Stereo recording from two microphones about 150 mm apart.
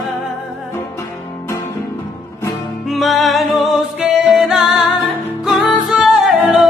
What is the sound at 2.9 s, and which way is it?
Music, centre (ahead or behind).